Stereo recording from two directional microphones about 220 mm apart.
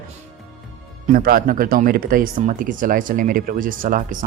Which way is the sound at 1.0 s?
40° right (ahead or behind).